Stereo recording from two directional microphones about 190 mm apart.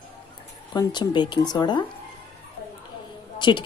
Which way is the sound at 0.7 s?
20° left (ahead or behind).